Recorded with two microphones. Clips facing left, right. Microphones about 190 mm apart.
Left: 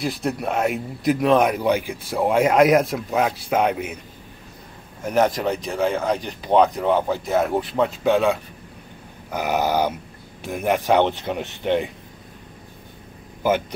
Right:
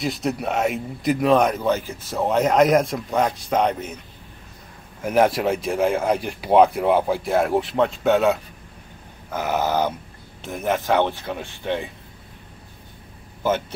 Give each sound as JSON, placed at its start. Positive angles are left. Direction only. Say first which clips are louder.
{"t": 0.0, "sound": "speech", "louder": "even", "side_deg": 0}
{"t": 1.5, "sound": "speech", "louder": "left 1 dB", "side_deg": 15}
{"t": 5.0, "sound": "speech", "louder": "right 1 dB", "side_deg": -5}
{"t": 9.3, "sound": "speech", "louder": "left 1 dB", "side_deg": 15}
{"t": 13.4, "sound": "speech", "louder": "left 2 dB", "side_deg": 10}